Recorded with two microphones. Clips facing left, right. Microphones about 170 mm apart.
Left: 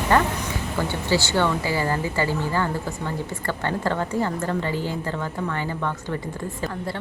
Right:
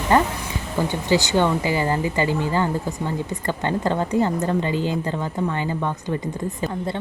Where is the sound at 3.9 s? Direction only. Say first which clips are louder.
Right 4 dB; 20° right (ahead or behind).